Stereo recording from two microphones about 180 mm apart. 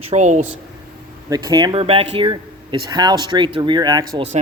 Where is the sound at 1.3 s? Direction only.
20° right (ahead or behind).